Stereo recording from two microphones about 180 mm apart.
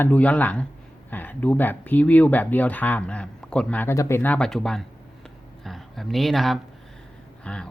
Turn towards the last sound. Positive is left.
turn(degrees=5)  # may be behind; listen again after turning